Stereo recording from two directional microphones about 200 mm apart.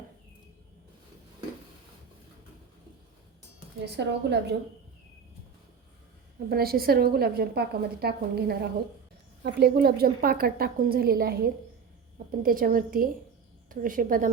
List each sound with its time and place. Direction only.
3.9 s a woman's voice: 55° right (ahead or behind)
6.5 s a woman's voice: 50° right (ahead or behind)
12.4 s a woman's voice: 45° right (ahead or behind)